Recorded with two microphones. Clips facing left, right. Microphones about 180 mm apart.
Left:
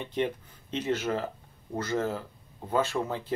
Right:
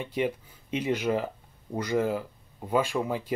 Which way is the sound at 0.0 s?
10° right (ahead or behind).